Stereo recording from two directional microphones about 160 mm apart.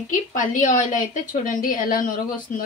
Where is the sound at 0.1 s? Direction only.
55° left (ahead or behind).